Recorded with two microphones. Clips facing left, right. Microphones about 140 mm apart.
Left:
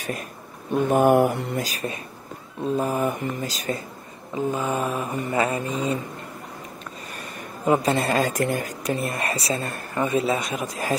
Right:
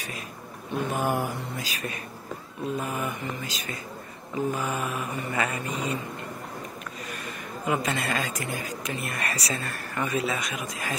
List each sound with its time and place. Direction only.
0.8 s speech: 55° left (ahead or behind)
1.6 s speech: 40° left (ahead or behind)
4.5 s speech: 25° left (ahead or behind)
7.6 s speech: 35° left (ahead or behind); by 8.6 s 50° left (ahead or behind)
8.8 s speech: 25° left (ahead or behind)